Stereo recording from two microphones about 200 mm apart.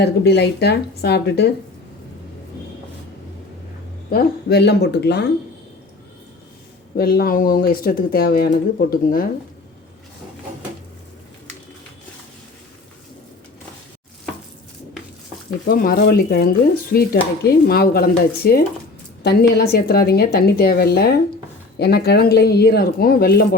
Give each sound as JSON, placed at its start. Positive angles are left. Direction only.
{"t": 0.0, "sound": "speech", "side_deg": 55}
{"t": 4.1, "sound": "speech", "side_deg": 50}
{"t": 6.9, "sound": "speech", "side_deg": 50}
{"t": 15.6, "sound": "speech", "side_deg": 45}